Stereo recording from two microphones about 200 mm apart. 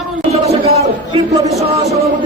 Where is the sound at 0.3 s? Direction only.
30° right (ahead or behind).